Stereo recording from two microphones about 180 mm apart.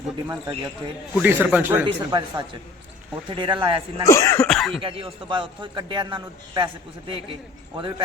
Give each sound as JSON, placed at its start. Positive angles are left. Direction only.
{"t": 0.3, "sound": "a man's voice", "side_deg": -20}
{"t": 2.0, "sound": "a man's voice", "side_deg": -25}
{"t": 4.0, "sound": "speech", "side_deg": 15}
{"t": 4.4, "sound": "throat clearing", "side_deg": 0}
{"t": 4.8, "sound": "a man's voice", "side_deg": -30}
{"t": 7.8, "sound": "a man's voice", "side_deg": -25}